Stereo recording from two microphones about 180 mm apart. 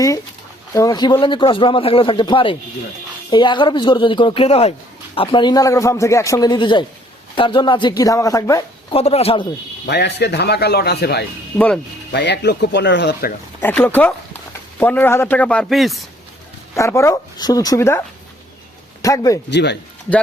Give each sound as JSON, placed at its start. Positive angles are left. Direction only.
{"t": 0.7, "sound": "a man's voice", "side_deg": 20}
{"t": 8.9, "sound": "speech", "side_deg": 35}
{"t": 9.8, "sound": "a man's voice", "side_deg": 70}
{"t": 11.5, "sound": "speech", "side_deg": 10}
{"t": 12.1, "sound": "speech", "side_deg": 70}
{"t": 13.6, "sound": "speech", "side_deg": 10}
{"t": 16.7, "sound": "speech", "side_deg": 15}
{"t": 19.0, "sound": "a man's voice", "side_deg": 20}
{"t": 19.5, "sound": "speech", "side_deg": 70}